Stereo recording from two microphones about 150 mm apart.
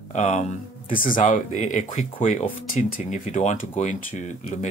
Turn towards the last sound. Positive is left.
turn(degrees=55)  # may be behind; listen again after turning